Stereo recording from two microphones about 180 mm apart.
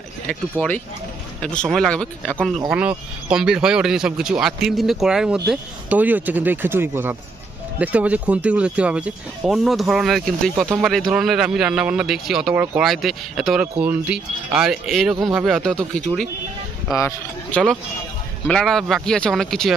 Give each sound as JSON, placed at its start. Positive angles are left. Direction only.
{"t": 0.3, "sound": "a man's voice", "side_deg": 10}
{"t": 2.7, "sound": "a man's voice", "side_deg": -5}
{"t": 16.9, "sound": "speech", "side_deg": 15}
{"t": 18.5, "sound": "a man's voice", "side_deg": 0}